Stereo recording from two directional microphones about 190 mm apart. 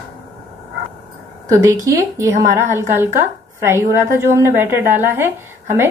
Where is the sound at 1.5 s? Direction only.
15° right (ahead or behind).